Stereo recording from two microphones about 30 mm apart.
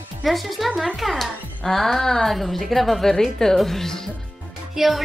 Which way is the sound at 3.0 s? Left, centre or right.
Centre.